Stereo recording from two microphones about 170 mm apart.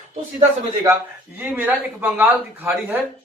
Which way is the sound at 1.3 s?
10° right (ahead or behind).